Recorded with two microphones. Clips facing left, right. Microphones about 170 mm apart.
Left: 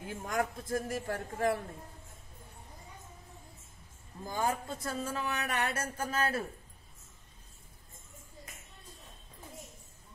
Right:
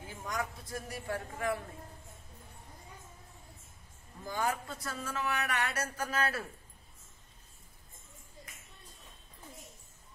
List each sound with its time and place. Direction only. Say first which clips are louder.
0.1 s a man's voice: left 5 dB; 50° left (ahead or behind)
4.3 s speech: left 1 dB; 25° left (ahead or behind)